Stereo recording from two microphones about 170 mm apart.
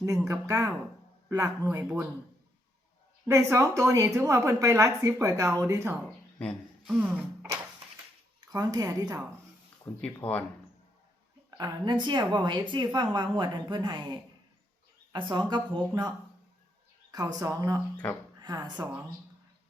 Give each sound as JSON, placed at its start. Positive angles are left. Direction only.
{"t": 0.0, "sound": "a woman's voice", "side_deg": -20}
{"t": 3.2, "sound": "a woman's voice", "side_deg": -20}
{"t": 6.4, "sound": "speech", "side_deg": -5}
{"t": 8.5, "sound": "a woman's voice", "side_deg": -20}
{"t": 9.9, "sound": "speech", "side_deg": 10}
{"t": 11.5, "sound": "a woman's voice", "side_deg": -25}
{"t": 17.1, "sound": "a woman's voice", "side_deg": -20}
{"t": 18.0, "sound": "speech", "side_deg": 5}
{"t": 18.3, "sound": "speech", "side_deg": -25}